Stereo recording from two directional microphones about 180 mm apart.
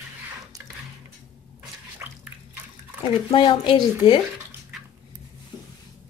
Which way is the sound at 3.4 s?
25° left (ahead or behind).